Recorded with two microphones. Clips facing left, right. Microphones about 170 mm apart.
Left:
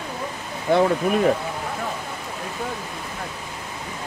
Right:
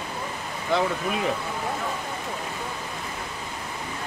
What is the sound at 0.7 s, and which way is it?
Speech, 50° left (ahead or behind).